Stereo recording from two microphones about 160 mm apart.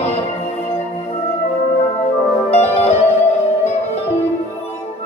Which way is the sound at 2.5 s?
40° left (ahead or behind).